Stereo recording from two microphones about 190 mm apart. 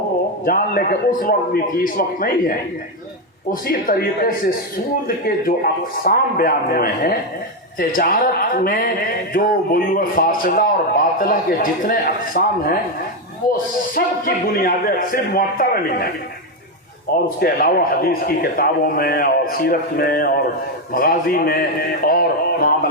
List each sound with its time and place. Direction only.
0.4 s speech: 50° left (ahead or behind)
13.9 s speech: 50° left (ahead or behind)
17.2 s speech: 50° left (ahead or behind)